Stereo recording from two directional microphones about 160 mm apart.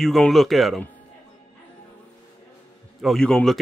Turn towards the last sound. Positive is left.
turn(degrees=5)  # may be behind; listen again after turning